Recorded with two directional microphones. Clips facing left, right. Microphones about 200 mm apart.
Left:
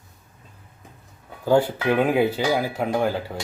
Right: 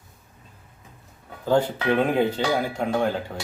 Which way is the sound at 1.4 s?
10° left (ahead or behind).